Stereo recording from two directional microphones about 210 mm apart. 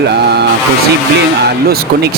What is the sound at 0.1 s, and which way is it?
Music, 50° right (ahead or behind).